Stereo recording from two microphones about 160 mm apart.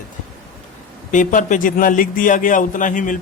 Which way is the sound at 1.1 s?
55° left (ahead or behind).